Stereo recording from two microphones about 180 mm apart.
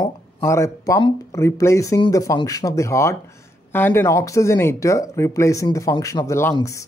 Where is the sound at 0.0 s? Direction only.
15° left (ahead or behind).